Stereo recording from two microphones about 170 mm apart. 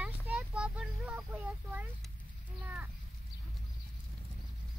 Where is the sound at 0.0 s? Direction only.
5° right (ahead or behind).